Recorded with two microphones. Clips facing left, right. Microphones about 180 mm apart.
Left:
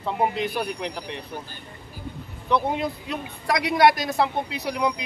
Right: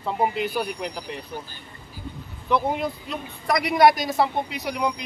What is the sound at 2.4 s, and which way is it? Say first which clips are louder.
A man's voice: even; centre (ahead or behind).